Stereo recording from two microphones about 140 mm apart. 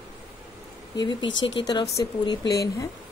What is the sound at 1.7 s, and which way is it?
Speech, 30° left (ahead or behind).